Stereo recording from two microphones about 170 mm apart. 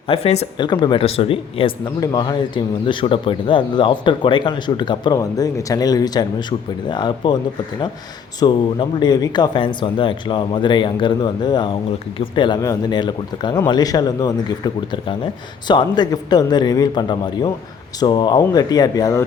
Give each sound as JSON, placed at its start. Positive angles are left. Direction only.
{"t": 0.1, "sound": "speech", "side_deg": 35}
{"t": 0.7, "sound": "speech", "side_deg": 25}
{"t": 8.4, "sound": "speech", "side_deg": 25}